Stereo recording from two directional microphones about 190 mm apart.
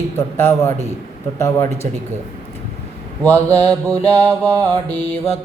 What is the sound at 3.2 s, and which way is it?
Mantra, 10° left (ahead or behind).